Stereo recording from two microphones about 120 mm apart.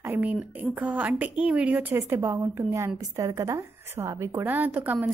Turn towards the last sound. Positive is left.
turn(degrees=-15)  # may be behind; listen again after turning